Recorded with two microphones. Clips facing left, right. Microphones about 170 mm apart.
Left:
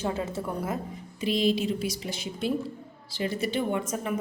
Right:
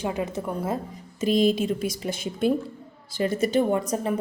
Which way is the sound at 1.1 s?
45° right (ahead or behind).